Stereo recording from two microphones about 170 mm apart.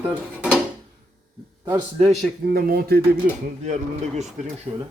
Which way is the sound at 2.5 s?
60° right (ahead or behind).